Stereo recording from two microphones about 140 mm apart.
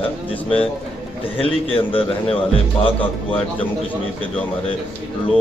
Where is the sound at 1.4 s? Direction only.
40° left (ahead or behind).